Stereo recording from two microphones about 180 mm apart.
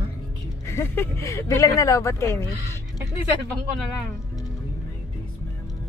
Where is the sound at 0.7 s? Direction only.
15° left (ahead or behind).